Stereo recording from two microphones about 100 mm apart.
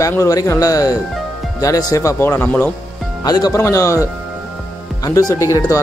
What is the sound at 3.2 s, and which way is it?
Speech, 40° left (ahead or behind).